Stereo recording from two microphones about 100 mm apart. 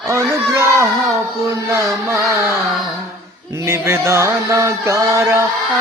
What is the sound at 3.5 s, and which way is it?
Chant, 30° right (ahead or behind).